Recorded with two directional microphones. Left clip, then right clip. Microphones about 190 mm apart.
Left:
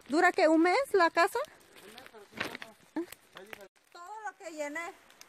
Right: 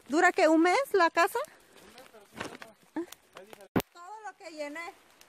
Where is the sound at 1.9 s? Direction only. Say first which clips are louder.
Left 3 dB; 20° right (ahead or behind).